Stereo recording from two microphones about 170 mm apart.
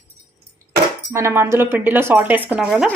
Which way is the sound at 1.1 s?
15° right (ahead or behind).